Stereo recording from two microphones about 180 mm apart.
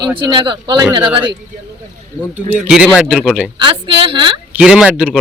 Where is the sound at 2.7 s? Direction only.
5° right (ahead or behind).